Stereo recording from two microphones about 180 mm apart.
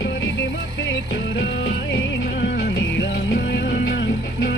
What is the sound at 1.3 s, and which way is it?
Music, 85° left.